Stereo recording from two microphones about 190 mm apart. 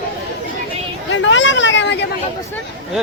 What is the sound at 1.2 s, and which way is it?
Speech, 80° left.